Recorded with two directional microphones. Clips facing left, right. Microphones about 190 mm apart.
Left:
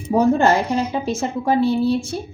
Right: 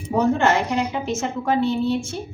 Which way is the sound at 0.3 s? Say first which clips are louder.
Left 3 dB; 35° left (ahead or behind).